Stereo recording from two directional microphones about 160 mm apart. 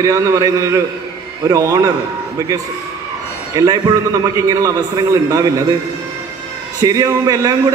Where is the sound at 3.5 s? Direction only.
25° right (ahead or behind).